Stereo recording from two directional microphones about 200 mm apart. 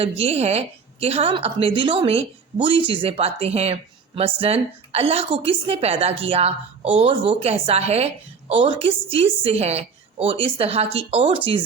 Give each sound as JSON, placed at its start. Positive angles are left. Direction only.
{"t": 0.0, "sound": "a woman's voice", "side_deg": -30}